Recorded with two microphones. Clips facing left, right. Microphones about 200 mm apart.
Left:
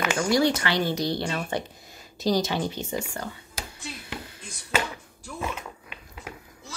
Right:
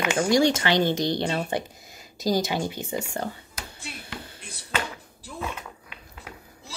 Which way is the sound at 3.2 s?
25° right (ahead or behind).